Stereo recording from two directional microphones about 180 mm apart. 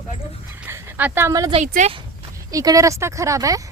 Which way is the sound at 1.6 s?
45° right (ahead or behind).